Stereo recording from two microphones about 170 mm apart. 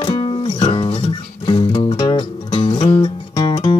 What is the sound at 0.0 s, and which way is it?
Music, 30° left (ahead or behind).